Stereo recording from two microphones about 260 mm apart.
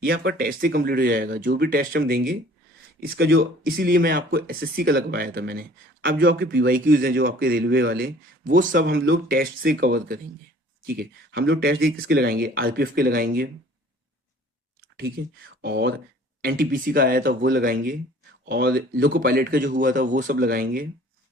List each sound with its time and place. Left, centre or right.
0.0 s speech: right
15.6 s speech: right